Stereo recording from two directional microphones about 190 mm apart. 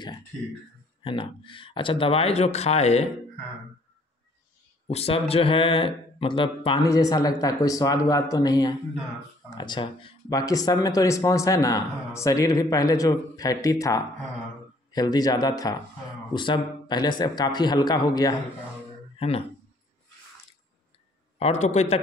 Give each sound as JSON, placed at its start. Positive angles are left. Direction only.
{"t": 1.0, "sound": "speech", "side_deg": 25}
{"t": 4.8, "sound": "speech", "side_deg": 30}
{"t": 19.1, "sound": "a sound", "side_deg": 30}
{"t": 21.4, "sound": "a man's voice", "side_deg": 35}